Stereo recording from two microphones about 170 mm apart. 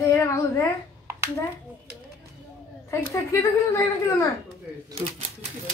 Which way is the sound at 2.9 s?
15° left (ahead or behind).